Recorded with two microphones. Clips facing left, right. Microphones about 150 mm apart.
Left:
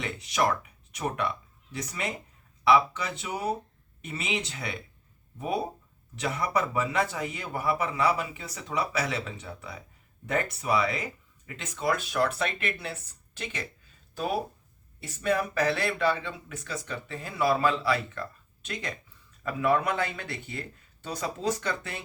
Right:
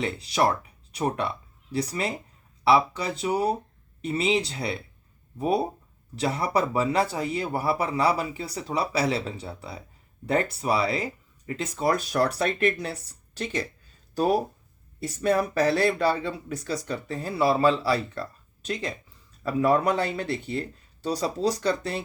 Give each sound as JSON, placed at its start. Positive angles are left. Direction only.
{"t": 0.0, "sound": "speech", "side_deg": -35}